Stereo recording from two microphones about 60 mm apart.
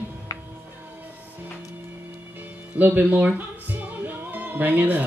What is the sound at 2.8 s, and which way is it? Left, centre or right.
Speech, right.